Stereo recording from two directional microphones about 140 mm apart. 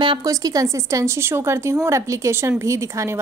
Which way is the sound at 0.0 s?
35° right (ahead or behind).